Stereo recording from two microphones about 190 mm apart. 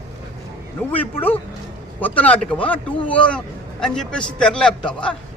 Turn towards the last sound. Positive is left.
turn(degrees=5)  # may be behind; listen again after turning